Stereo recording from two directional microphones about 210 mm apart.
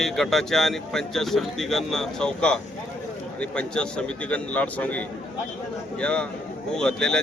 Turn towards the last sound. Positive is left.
turn(degrees=5)  # may be behind; listen again after turning